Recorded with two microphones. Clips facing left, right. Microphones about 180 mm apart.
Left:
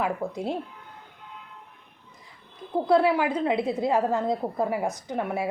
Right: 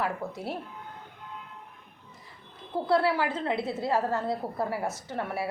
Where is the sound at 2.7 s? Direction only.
15° left (ahead or behind).